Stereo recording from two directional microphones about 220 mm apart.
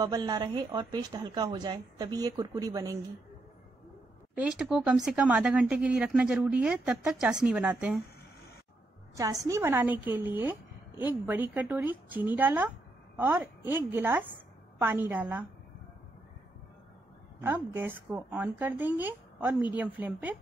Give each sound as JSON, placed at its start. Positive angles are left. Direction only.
{"t": 0.0, "sound": "a woman's voice", "side_deg": -20}
{"t": 4.4, "sound": "speech", "side_deg": 0}
{"t": 9.1, "sound": "a woman's voice", "side_deg": -15}
{"t": 17.4, "sound": "a woman's voice", "side_deg": -10}